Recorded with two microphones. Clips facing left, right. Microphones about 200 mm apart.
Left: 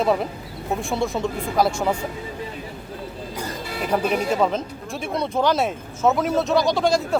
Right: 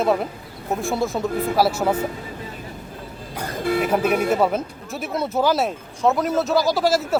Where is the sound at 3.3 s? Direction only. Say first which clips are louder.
Right 9 dB; 55° right (ahead or behind).